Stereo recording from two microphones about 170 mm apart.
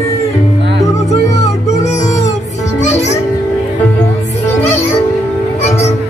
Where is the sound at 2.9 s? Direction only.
40° left (ahead or behind).